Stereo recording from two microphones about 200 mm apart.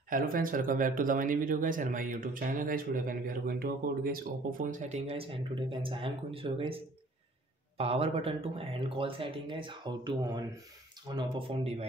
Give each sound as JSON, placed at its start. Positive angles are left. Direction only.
{"t": 0.1, "sound": "speech", "side_deg": -45}